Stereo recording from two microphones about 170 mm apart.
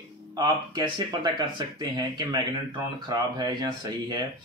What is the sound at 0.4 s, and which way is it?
Speech, 25° right (ahead or behind).